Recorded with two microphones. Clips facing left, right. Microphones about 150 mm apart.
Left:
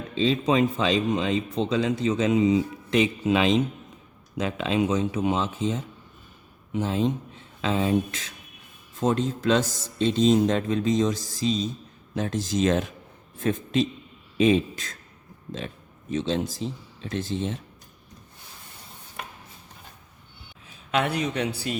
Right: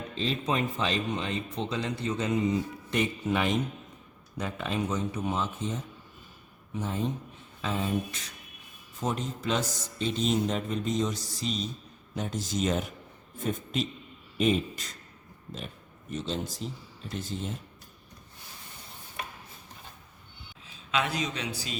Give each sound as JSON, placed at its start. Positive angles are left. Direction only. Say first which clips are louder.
{"t": 0.4, "sound": "speech", "louder": "left 5 dB", "side_deg": 90}
{"t": 20.9, "sound": "a man's voice", "louder": "left 5 dB", "side_deg": 60}